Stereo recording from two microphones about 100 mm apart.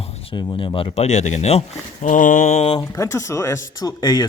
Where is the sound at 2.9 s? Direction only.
30° left (ahead or behind).